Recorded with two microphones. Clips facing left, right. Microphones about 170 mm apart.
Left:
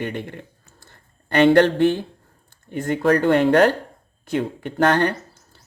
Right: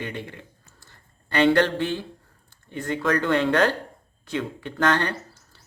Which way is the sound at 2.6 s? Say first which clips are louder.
Left 5 dB; 45° left (ahead or behind).